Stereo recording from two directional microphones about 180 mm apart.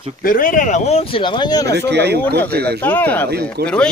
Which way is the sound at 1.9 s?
65° right (ahead or behind).